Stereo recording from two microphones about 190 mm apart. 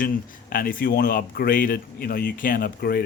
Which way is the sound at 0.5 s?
50° left (ahead or behind).